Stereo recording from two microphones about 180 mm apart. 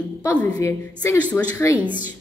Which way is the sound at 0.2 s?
15° left (ahead or behind).